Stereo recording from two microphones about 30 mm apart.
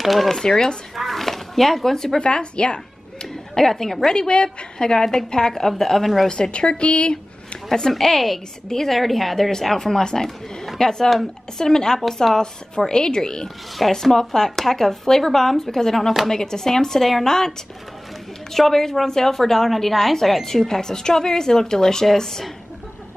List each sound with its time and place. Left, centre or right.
0.0 s speech: centre
0.3 s a woman's voice: centre
0.9 s a sound: centre
2.1 s speech: left
3.5 s speech: centre
4.1 s speech: left
4.7 s speech: left
6.2 s a woman's voice: left
8.0 s speech: centre
8.9 s a woman's voice: centre; by 13.5 s left
13.8 s a woman's voice: centre
14.1 s a woman's voice: centre